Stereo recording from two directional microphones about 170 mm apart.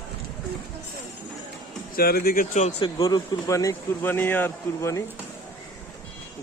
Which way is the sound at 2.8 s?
25° left (ahead or behind).